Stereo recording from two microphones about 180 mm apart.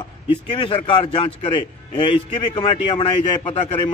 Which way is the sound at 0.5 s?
25° left (ahead or behind).